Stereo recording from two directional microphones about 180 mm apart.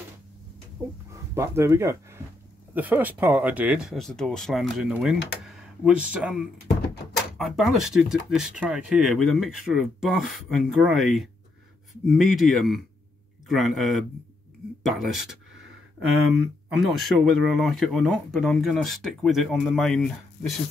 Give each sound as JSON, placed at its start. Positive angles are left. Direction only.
{"t": 0.8, "sound": "speech", "side_deg": -15}